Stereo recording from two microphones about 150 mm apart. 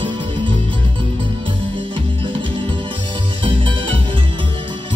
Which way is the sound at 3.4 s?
35° right (ahead or behind).